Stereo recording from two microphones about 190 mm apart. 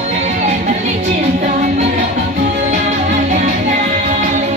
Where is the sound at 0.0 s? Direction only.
40° right (ahead or behind).